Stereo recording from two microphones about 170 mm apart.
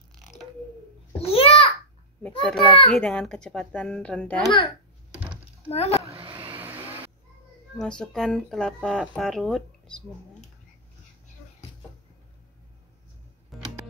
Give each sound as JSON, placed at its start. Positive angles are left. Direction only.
{"t": 1.2, "sound": "babbling", "side_deg": 35}
{"t": 2.2, "sound": "a sound", "side_deg": 5}
{"t": 2.9, "sound": "a child's voice", "side_deg": 5}
{"t": 5.7, "sound": "a child's voice", "side_deg": 40}
{"t": 6.0, "sound": "a sound", "side_deg": -35}
{"t": 6.6, "sound": "vehicle", "side_deg": -10}
{"t": 7.7, "sound": "a child's voice", "side_deg": 5}
{"t": 13.5, "sound": "music", "side_deg": 0}